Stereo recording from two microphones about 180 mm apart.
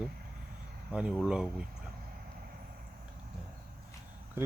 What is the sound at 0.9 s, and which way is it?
Speech, 5° right (ahead or behind).